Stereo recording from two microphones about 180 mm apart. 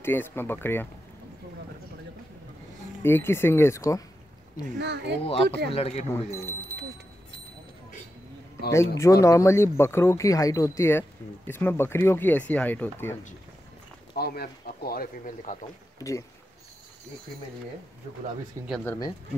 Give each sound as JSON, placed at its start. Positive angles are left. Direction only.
{"t": 0.0, "sound": "speech", "side_deg": 10}
{"t": 3.0, "sound": "speech", "side_deg": 15}
{"t": 4.7, "sound": "speech", "side_deg": -70}
{"t": 5.2, "sound": "speech", "side_deg": 30}
{"t": 8.7, "sound": "speech", "side_deg": 15}
{"t": 14.1, "sound": "speech", "side_deg": 60}
{"t": 16.0, "sound": "speech", "side_deg": 15}
{"t": 18.9, "sound": "speech", "side_deg": 20}